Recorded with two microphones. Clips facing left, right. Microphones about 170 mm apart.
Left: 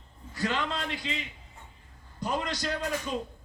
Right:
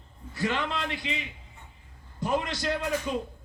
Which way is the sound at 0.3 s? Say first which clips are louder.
Right 1 dB; 20° right (ahead or behind).